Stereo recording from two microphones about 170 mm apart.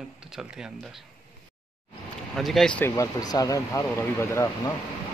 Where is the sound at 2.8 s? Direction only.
20° left (ahead or behind).